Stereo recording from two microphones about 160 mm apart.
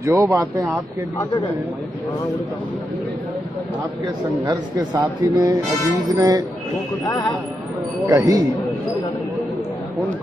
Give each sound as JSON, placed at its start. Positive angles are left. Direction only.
{"t": 0.0, "sound": "a man's voice", "side_deg": -20}
{"t": 4.0, "sound": "a man's voice", "side_deg": -20}
{"t": 8.1, "sound": "a man's voice", "side_deg": -20}